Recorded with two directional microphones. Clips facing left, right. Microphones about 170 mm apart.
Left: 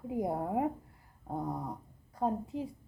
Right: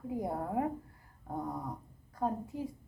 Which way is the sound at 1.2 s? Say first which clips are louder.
Left 2 dB; 10° left (ahead or behind).